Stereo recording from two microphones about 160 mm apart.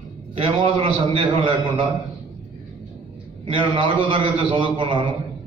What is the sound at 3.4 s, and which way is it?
A man's voice, 30° right (ahead or behind).